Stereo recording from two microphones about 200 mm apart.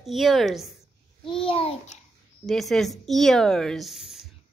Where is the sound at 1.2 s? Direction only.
25° left (ahead or behind).